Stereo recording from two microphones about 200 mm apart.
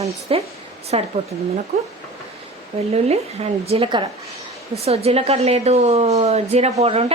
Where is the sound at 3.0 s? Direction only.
30° right (ahead or behind).